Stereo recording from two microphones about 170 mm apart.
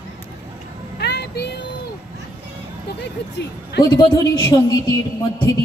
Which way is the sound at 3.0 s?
75° left (ahead or behind).